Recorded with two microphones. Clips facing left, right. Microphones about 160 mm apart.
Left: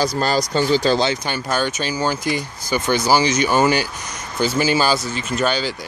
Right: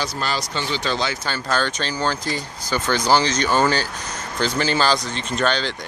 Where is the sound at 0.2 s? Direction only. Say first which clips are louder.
Left 7 dB; 40° left (ahead or behind).